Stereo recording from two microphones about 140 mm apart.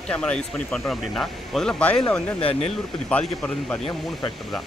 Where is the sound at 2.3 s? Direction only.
45° left (ahead or behind).